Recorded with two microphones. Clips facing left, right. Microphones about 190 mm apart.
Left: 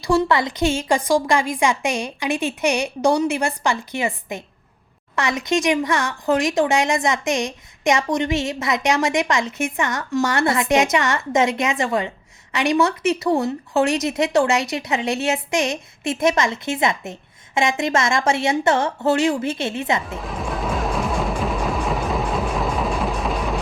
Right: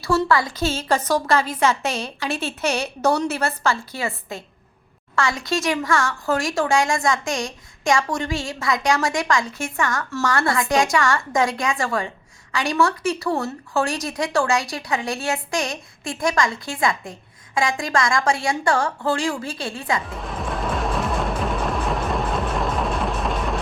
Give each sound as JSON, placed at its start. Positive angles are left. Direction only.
{"t": 0.0, "sound": "a woman's voice", "side_deg": 20}
{"t": 20.1, "sound": "music", "side_deg": 0}